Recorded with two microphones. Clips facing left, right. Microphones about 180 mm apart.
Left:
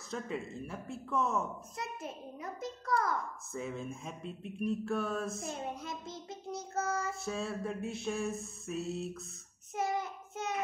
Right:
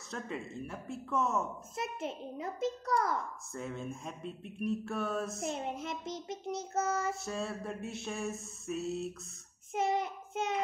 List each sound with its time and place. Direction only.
0.1 s speech: centre (ahead or behind)
1.8 s child singing: 25° right (ahead or behind)
3.5 s speech: centre (ahead or behind)
5.4 s child singing: 20° right (ahead or behind)
7.2 s speech: centre (ahead or behind)
9.8 s child singing: 25° right (ahead or behind)